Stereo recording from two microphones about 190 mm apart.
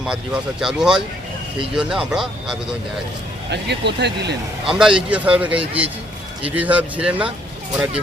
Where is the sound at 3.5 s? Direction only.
65° right (ahead or behind).